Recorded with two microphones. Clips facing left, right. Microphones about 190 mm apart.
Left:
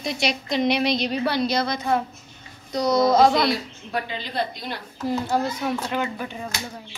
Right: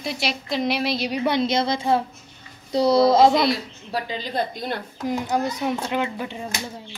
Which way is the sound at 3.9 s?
45° right (ahead or behind).